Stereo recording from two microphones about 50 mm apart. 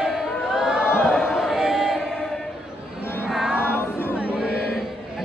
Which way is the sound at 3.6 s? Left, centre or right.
Left.